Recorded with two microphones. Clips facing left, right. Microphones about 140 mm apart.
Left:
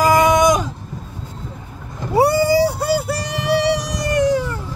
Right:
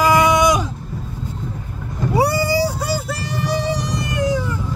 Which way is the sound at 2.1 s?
50° left (ahead or behind).